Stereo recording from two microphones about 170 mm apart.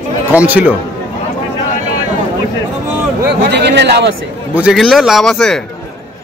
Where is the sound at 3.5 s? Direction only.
90° right.